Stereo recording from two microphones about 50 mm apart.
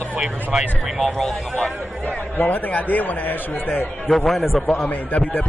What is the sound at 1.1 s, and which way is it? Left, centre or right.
Speech, centre.